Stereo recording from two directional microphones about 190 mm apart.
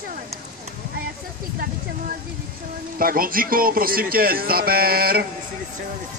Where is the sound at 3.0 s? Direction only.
50° right (ahead or behind).